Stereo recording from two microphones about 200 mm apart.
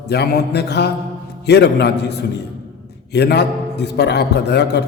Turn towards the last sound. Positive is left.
turn(degrees=55)  # may be behind; listen again after turning